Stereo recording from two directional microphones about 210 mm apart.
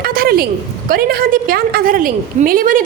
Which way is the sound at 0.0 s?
45° right (ahead or behind).